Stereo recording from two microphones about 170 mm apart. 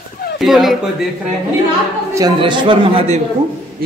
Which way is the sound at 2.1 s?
25° right (ahead or behind).